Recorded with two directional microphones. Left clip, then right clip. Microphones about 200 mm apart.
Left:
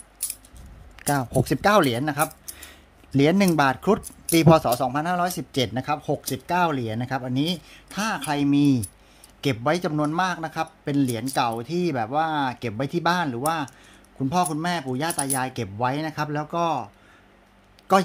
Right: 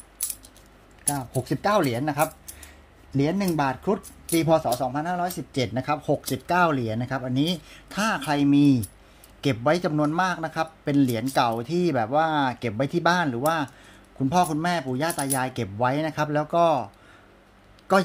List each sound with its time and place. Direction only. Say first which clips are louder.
0.9 s speech: left 6 dB; 45° left (ahead or behind)
1.4 s speech: left 3 dB; 30° left (ahead or behind)
3.1 s speech: left 5 dB; 35° left (ahead or behind); by 16.9 s centre (ahead or behind)
17.9 s a man's voice: left 2 dB; 10° left (ahead or behind)